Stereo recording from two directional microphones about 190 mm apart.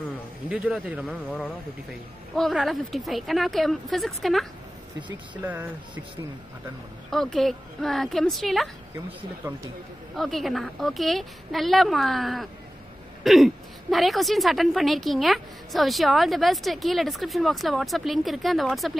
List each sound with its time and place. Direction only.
0.5 s a woman's voice: 5° right (ahead or behind)
7.1 s a woman's voice: centre (ahead or behind)
10.1 s a woman's voice: centre (ahead or behind)